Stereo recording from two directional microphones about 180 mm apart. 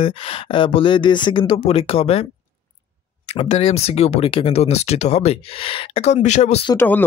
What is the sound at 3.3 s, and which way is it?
Speech, 35° left (ahead or behind).